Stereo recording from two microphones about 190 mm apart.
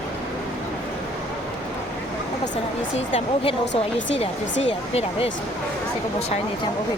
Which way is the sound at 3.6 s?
70° left (ahead or behind).